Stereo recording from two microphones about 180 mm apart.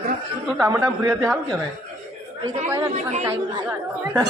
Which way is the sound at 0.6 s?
15° right (ahead or behind).